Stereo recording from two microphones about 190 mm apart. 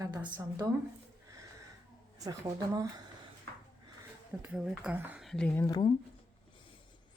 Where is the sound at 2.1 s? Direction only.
20° right (ahead or behind).